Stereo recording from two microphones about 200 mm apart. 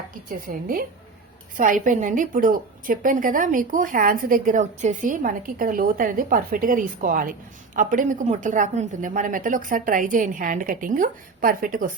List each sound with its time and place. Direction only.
0.3 s a woman's voice: 45° right (ahead or behind)